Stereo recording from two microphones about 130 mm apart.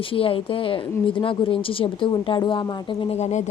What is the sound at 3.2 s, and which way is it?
Speech, 60° left (ahead or behind).